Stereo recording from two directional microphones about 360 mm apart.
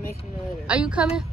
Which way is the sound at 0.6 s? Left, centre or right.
Centre.